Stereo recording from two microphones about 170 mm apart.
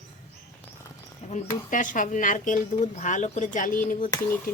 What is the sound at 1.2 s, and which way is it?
Cricket, 40° left (ahead or behind).